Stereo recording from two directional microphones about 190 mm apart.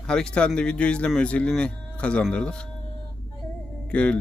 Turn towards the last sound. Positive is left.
turn(degrees=5)  # may be behind; listen again after turning